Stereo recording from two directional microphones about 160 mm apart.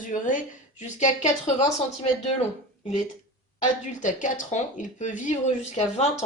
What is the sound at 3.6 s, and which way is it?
Speech, 50° left (ahead or behind).